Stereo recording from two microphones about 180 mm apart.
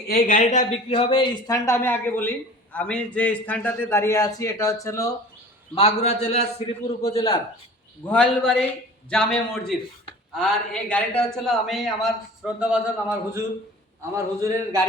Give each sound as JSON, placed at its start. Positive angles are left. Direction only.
{"t": 0.1, "sound": "a man's voice", "side_deg": 50}
{"t": 1.5, "sound": "a man's voice", "side_deg": 15}
{"t": 5.7, "sound": "a man's voice", "side_deg": 35}
{"t": 8.0, "sound": "a man's voice", "side_deg": 5}
{"t": 10.3, "sound": "a man's voice", "side_deg": 5}
{"t": 14.2, "sound": "a man's voice", "side_deg": -15}